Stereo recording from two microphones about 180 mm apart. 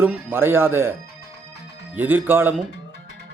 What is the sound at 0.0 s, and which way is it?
Speech, 10° right (ahead or behind).